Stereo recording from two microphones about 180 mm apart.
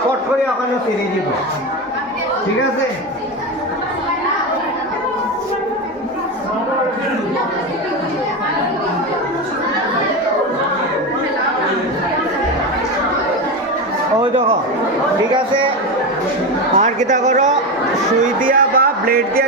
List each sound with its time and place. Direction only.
16.7 s a man's voice: 40° right (ahead or behind)
18.2 s speech: 50° right (ahead or behind)